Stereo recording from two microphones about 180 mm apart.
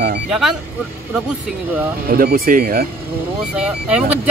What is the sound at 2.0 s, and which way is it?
Speech, 55° right (ahead or behind).